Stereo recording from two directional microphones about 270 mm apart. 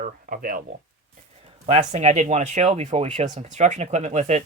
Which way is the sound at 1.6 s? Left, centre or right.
Right.